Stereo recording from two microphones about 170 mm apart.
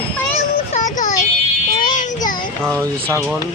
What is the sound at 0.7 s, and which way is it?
Child singing, 45° left (ahead or behind).